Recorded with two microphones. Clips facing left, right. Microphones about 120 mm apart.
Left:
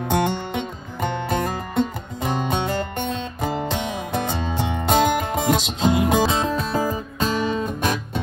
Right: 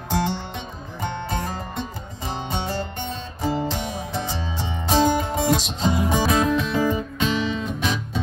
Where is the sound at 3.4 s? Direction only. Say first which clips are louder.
Right 1 dB; 60° left (ahead or behind); by 6.2 s 80° left.